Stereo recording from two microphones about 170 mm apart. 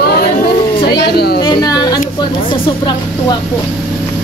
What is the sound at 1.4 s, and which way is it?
Speech, 20° left (ahead or behind).